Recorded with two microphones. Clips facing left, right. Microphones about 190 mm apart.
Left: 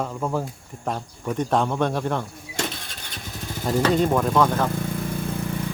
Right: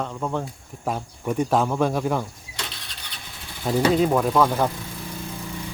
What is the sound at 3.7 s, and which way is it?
Speech, 5° right (ahead or behind).